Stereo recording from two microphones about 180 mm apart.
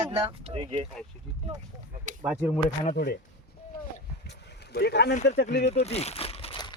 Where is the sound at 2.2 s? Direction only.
10° right (ahead or behind).